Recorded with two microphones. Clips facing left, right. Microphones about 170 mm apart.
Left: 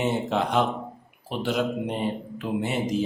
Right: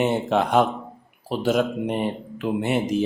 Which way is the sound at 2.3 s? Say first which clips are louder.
Right 4 dB; 65° right (ahead or behind).